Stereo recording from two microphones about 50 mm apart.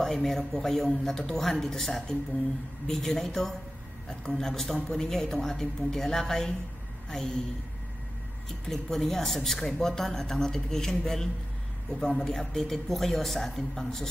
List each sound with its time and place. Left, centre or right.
0.0 s a man's voice: centre
8.6 s a man's voice: centre